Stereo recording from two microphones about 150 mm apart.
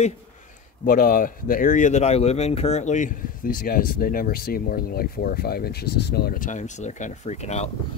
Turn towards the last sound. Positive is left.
turn(degrees=50)  # may be behind; listen again after turning